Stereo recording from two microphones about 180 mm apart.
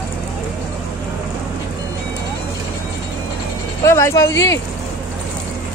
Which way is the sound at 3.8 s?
15° left (ahead or behind).